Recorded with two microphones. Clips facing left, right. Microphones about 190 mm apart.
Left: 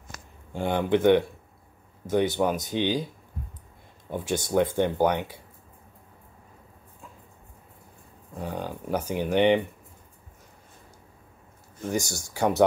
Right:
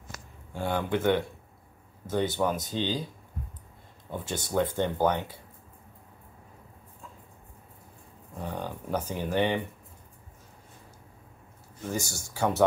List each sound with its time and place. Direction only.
0.6 s speech: 20° left (ahead or behind)
4.2 s speech: 10° left (ahead or behind)
8.4 s speech: 10° left (ahead or behind)
11.9 s speech: 15° left (ahead or behind)